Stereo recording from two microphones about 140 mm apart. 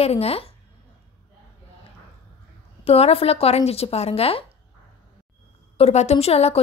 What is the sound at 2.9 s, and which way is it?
A woman's voice, 45° left (ahead or behind).